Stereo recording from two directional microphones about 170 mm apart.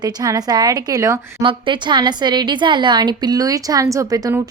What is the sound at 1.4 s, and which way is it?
A woman's voice, 30° right (ahead or behind).